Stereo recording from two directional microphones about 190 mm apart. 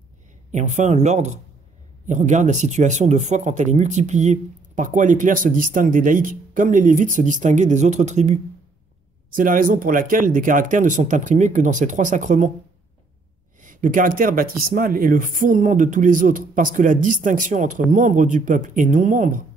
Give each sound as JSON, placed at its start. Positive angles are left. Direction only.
{"t": 0.5, "sound": "speech", "side_deg": -40}
{"t": 13.6, "sound": "speech", "side_deg": -45}